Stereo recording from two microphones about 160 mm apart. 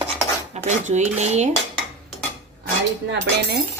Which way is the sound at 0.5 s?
45° right (ahead or behind).